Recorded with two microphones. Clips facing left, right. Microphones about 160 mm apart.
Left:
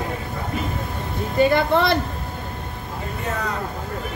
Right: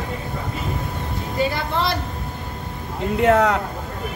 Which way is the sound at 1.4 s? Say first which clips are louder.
Left 6 dB; 55° left (ahead or behind).